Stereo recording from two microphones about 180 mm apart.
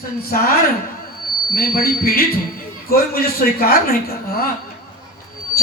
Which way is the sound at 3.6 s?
55° left (ahead or behind).